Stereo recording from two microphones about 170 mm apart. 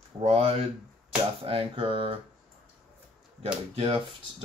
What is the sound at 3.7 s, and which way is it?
Speech, 30° right (ahead or behind).